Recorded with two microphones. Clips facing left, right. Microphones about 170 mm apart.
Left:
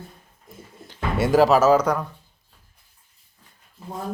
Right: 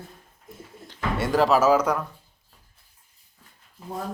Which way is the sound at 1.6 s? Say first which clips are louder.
Left 2 dB; 5° right (ahead or behind).